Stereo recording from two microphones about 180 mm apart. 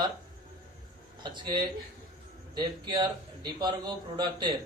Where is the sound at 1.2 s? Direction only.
25° right (ahead or behind).